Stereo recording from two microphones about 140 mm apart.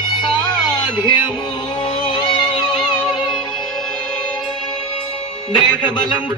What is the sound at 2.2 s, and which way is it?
Music, 35° left (ahead or behind).